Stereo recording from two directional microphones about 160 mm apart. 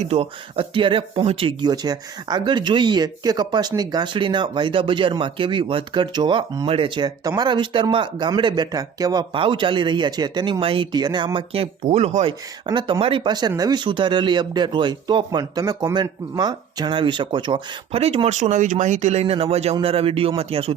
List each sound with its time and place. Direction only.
0.0 s speech: 40° right (ahead or behind)